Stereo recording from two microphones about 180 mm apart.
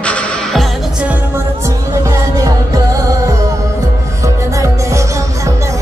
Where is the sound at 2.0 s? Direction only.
15° right (ahead or behind).